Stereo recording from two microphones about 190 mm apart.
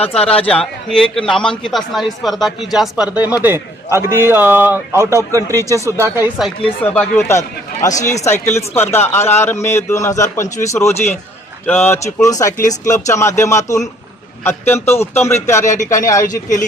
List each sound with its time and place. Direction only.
0.0 s a man's voice: 5° left (ahead or behind); by 5.4 s 15° right (ahead or behind)
5.5 s speech: 15° left (ahead or behind)
5.8 s a man's voice: 10° right (ahead or behind)
6.9 s speech: 5° left (ahead or behind)
15.6 s speech: 40° left (ahead or behind)
16.0 s speech: 15° left (ahead or behind)